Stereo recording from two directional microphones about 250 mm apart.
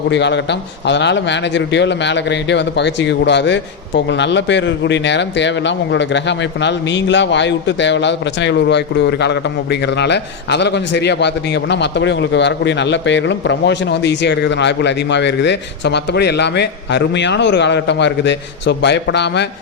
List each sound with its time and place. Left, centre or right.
0.1 s a man's voice: left